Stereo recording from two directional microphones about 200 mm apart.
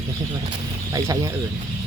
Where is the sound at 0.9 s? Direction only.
15° right (ahead or behind).